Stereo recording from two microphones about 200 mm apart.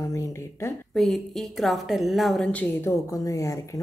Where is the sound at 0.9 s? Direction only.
Centre (ahead or behind).